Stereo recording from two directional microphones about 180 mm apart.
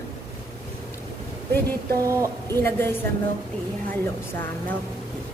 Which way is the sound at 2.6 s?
10° left (ahead or behind).